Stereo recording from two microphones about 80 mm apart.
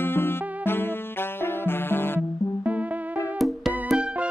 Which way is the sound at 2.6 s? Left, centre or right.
Centre.